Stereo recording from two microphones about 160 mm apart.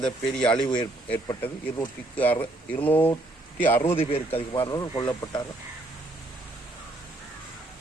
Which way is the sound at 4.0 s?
35° left (ahead or behind).